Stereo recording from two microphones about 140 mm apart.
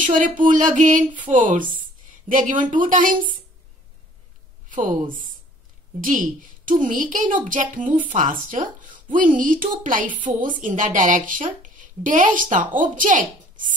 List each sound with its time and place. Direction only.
0.0 s a woman's voice: 70° right (ahead or behind)
4.6 s a sound: 70° right (ahead or behind)
5.9 s a woman's voice: 70° right (ahead or behind)